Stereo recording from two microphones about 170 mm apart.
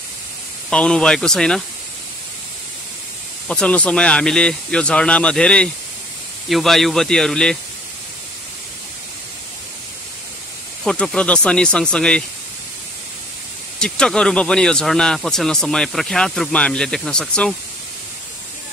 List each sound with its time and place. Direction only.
0.7 s speech: 5° left (ahead or behind)
3.4 s speech: 5° left (ahead or behind)
10.8 s speech: 5° left (ahead or behind)
13.7 s speech: 5° left (ahead or behind)